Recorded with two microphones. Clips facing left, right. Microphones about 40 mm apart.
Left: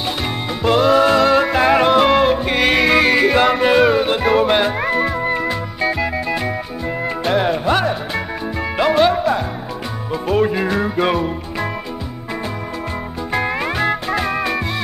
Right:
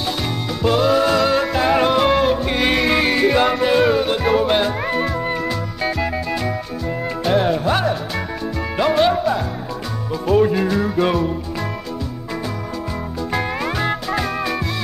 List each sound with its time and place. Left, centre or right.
0.6 s music: left
13.3 s music: centre